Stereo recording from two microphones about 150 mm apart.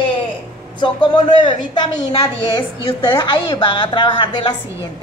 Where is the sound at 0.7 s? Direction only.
30° left (ahead or behind).